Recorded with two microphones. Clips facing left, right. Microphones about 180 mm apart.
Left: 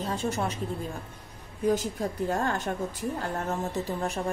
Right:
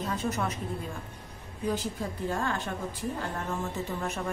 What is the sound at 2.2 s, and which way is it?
Speech, 40° left (ahead or behind).